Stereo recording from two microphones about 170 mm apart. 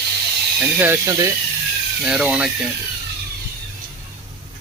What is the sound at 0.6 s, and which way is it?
Speech, 10° right (ahead or behind).